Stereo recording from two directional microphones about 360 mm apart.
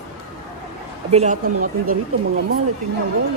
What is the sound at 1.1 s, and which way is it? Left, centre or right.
Speech, centre.